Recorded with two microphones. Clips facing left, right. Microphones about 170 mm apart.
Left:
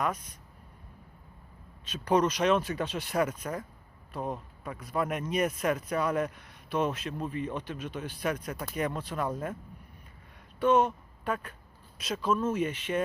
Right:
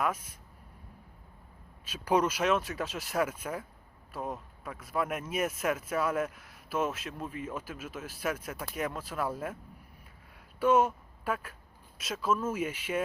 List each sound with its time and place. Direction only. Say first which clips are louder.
0.0 s speech: even; 5° right (ahead or behind)
1.8 s speech: left 2 dB; 10° right (ahead or behind)
10.6 s speech: left 1 dB; 10° right (ahead or behind)